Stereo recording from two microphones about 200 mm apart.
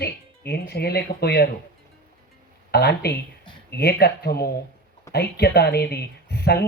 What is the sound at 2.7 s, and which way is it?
Speech, 50° left (ahead or behind).